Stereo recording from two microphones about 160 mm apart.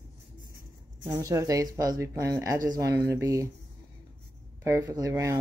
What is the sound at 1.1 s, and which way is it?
Speech, 20° right (ahead or behind).